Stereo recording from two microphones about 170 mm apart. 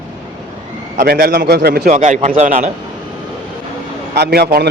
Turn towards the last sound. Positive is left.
turn(degrees=-70)  # may be behind; listen again after turning